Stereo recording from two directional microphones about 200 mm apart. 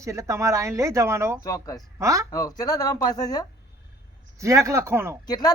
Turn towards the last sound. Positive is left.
turn(degrees=20)  # may be behind; listen again after turning